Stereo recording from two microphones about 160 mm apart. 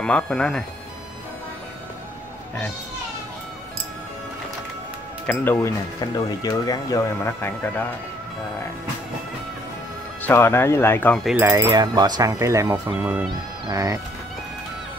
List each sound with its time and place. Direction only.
0.0 s speech: 5° left (ahead or behind)
5.2 s speech: 10° left (ahead or behind)
10.2 s speech: 15° left (ahead or behind)
11.2 s speech: 10° right (ahead or behind)
11.5 s speech: 25° right (ahead or behind)